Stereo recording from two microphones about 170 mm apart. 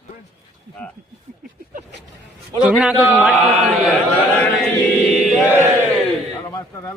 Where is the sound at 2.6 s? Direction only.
5° right (ahead or behind).